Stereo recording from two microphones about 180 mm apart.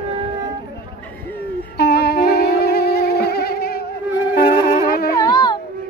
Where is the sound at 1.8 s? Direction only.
60° left (ahead or behind).